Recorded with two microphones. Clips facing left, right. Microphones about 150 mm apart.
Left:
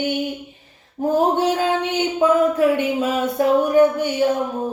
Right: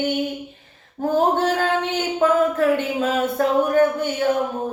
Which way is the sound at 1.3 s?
15° left (ahead or behind).